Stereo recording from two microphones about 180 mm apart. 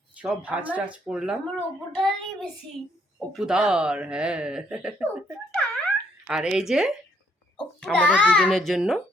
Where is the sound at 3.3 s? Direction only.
5° right (ahead or behind).